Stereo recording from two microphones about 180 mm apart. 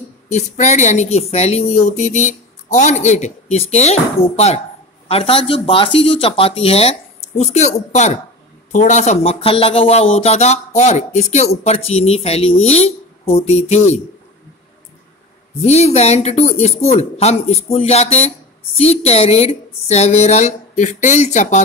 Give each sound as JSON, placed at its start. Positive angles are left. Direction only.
{"t": 0.3, "sound": "a woman's voice", "side_deg": 40}
{"t": 15.6, "sound": "a woman's voice", "side_deg": 35}